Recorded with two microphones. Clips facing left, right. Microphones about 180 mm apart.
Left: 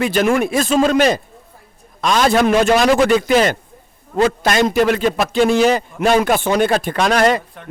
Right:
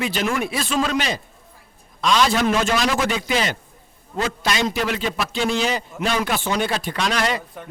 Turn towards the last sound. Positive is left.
turn(degrees=0)  # may be behind; listen again after turning